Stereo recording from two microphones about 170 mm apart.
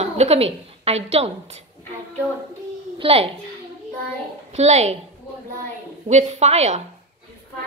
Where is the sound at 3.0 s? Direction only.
35° right (ahead or behind).